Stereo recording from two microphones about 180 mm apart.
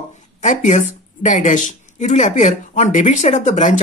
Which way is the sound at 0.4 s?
40° left (ahead or behind).